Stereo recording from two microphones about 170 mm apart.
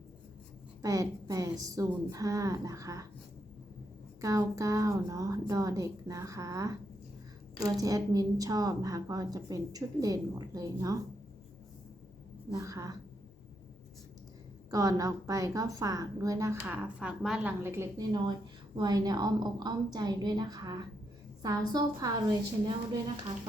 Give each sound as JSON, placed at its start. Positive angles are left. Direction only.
{"t": 0.8, "sound": "a woman's voice", "side_deg": -20}
{"t": 4.2, "sound": "a woman's voice", "side_deg": -20}
{"t": 12.5, "sound": "a woman's voice", "side_deg": -20}
{"t": 14.7, "sound": "a woman's voice", "side_deg": -20}